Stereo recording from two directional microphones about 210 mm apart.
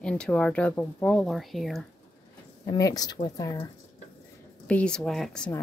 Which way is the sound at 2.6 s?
15° left (ahead or behind).